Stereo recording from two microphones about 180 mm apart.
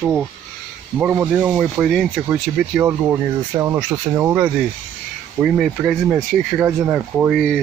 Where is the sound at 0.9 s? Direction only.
10° right (ahead or behind).